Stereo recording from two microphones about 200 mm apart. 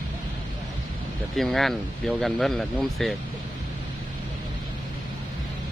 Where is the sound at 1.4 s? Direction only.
Centre (ahead or behind).